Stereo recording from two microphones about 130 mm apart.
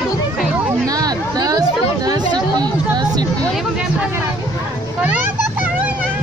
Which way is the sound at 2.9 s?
30° right (ahead or behind).